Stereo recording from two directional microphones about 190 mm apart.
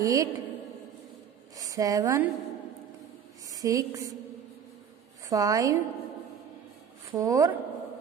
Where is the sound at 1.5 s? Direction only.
20° right (ahead or behind).